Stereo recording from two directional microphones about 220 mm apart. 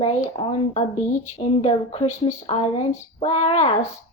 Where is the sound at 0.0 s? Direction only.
25° left (ahead or behind).